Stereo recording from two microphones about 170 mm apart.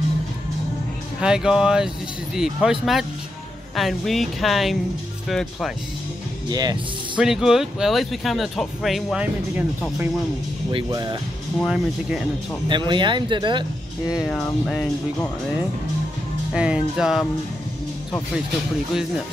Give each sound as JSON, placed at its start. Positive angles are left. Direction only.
{"t": 1.2, "sound": "speech", "side_deg": -5}
{"t": 6.5, "sound": "speech", "side_deg": -25}
{"t": 7.2, "sound": "speech", "side_deg": -5}
{"t": 10.7, "sound": "speech", "side_deg": -25}
{"t": 11.6, "sound": "speech", "side_deg": 0}
{"t": 12.6, "sound": "speech", "side_deg": -25}
{"t": 14.2, "sound": "speech", "side_deg": 5}
{"t": 16.5, "sound": "speech", "side_deg": -5}